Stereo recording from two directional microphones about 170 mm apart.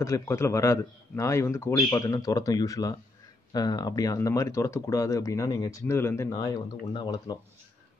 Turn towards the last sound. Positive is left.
turn(degrees=25)  # may be behind; listen again after turning